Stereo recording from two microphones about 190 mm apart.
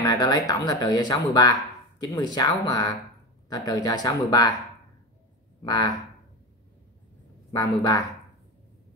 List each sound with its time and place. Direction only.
0.0 s speech: 20° left (ahead or behind)
5.6 s speech: 20° left (ahead or behind)
7.5 s speech: 20° left (ahead or behind)